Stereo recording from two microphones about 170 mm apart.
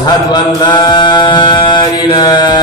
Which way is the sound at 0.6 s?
25° left (ahead or behind).